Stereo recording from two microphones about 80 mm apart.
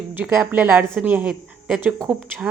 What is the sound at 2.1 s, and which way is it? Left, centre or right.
Speech, centre.